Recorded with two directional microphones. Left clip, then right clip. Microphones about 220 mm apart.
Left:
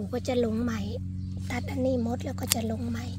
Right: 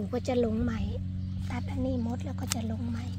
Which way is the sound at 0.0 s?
5° left (ahead or behind).